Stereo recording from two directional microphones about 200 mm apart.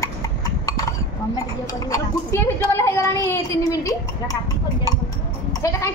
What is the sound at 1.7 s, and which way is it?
Speech, 15° left (ahead or behind).